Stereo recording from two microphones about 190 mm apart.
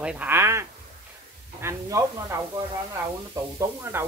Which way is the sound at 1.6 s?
15° right (ahead or behind).